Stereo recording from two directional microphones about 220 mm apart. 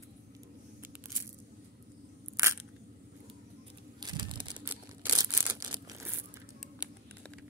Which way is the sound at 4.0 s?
20° right (ahead or behind).